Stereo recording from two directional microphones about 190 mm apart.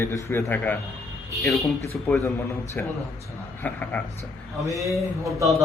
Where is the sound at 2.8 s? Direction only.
10° left (ahead or behind).